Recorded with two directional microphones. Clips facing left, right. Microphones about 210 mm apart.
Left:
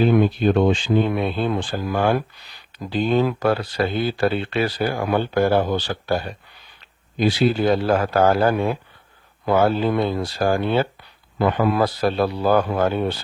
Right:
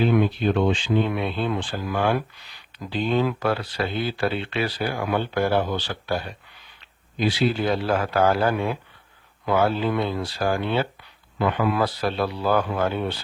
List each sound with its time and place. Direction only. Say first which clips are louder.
0.0 s speech: left 4 dB; 40° left (ahead or behind)